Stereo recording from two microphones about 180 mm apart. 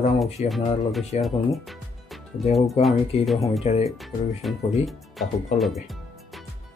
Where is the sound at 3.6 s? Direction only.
40° left (ahead or behind).